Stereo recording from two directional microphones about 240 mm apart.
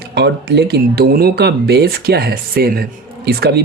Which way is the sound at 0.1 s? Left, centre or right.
Right.